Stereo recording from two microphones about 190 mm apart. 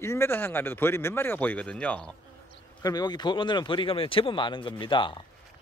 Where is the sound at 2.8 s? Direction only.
20° left (ahead or behind).